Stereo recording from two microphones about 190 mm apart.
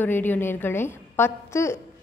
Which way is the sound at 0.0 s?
10° left (ahead or behind).